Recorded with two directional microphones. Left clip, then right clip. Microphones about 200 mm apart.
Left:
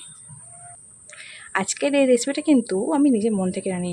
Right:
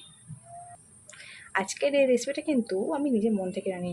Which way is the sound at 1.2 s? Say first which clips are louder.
Left 4 dB; 20° left (ahead or behind).